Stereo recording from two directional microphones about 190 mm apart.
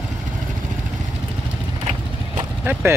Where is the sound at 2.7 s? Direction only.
10° right (ahead or behind).